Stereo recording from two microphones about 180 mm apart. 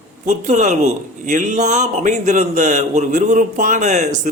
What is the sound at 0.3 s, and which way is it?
A man's voice, 40° right (ahead or behind).